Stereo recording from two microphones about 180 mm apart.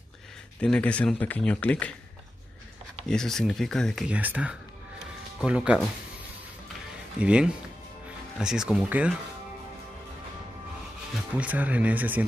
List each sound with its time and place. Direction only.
0.6 s speech: 5° left (ahead or behind)
3.1 s speech: 5° left (ahead or behind)
7.2 s speech: 5° right (ahead or behind)
11.3 s speech: 10° right (ahead or behind)